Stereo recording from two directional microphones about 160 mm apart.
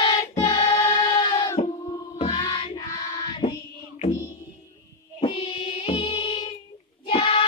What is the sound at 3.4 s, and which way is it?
Music, 45° left (ahead or behind).